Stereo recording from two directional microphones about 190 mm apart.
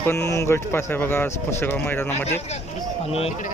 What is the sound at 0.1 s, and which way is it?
Speech, 15° left (ahead or behind).